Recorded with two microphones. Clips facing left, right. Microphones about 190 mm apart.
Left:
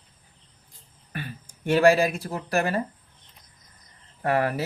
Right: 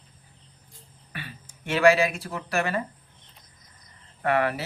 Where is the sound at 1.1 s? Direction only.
40° left (ahead or behind).